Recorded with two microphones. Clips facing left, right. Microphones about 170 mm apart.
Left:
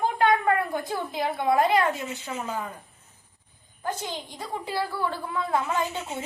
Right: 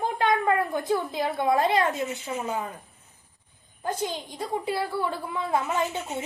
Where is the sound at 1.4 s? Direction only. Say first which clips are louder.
Left 1 dB; 25° right (ahead or behind).